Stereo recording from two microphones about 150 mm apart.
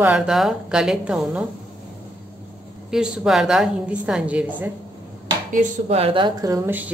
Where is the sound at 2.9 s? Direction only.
5° right (ahead or behind).